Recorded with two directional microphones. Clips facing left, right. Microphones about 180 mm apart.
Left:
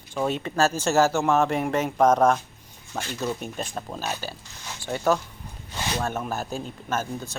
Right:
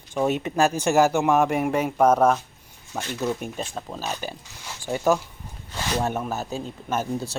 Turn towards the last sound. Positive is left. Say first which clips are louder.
# right 3 dB
turn(degrees=-10)  # may be behind; listen again after turning